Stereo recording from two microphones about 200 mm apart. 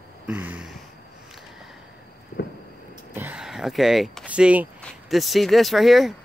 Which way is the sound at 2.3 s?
45° left (ahead or behind).